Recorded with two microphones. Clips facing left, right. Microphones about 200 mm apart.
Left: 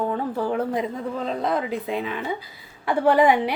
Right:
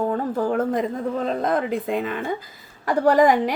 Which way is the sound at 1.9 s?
50° right (ahead or behind).